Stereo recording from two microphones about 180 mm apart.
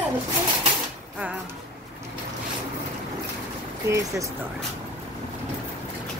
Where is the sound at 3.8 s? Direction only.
15° right (ahead or behind).